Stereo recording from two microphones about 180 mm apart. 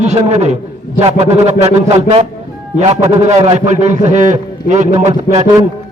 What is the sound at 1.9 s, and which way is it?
Speech, 35° right (ahead or behind).